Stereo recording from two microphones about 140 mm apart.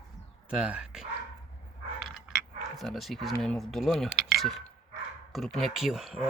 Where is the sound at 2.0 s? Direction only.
Centre (ahead or behind).